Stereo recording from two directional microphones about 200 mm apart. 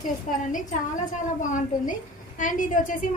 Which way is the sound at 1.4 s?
40° left (ahead or behind).